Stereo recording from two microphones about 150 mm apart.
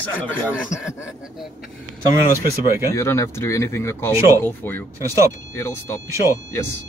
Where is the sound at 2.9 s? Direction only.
20° left (ahead or behind).